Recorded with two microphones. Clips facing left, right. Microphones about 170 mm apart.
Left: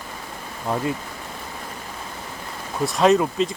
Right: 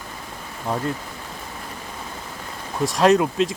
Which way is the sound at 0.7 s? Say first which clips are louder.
Left 1 dB; centre (ahead or behind).